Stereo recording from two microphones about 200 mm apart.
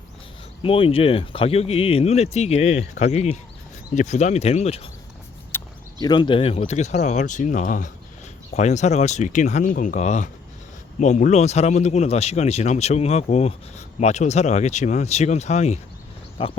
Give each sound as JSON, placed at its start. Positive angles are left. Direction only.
{"t": 0.6, "sound": "speech", "side_deg": 30}
{"t": 5.5, "sound": "speech", "side_deg": 15}